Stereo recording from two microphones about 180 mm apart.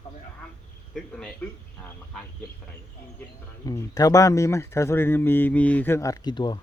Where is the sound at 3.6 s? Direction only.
20° left (ahead or behind).